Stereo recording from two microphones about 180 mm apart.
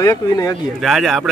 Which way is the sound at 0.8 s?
Centre (ahead or behind).